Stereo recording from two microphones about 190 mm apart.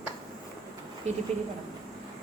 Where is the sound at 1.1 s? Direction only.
35° right (ahead or behind).